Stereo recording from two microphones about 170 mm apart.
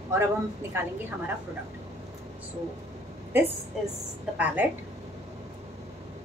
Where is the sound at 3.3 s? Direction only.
10° right (ahead or behind).